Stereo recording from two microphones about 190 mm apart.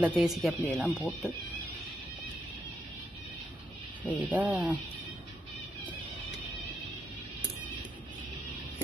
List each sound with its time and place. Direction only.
0.0 s speech: 5° right (ahead or behind)
4.0 s speech: 10° left (ahead or behind)
4.3 s speech: 10° right (ahead or behind)